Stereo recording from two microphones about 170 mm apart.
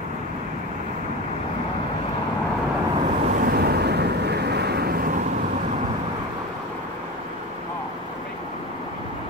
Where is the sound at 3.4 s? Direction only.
65° right (ahead or behind).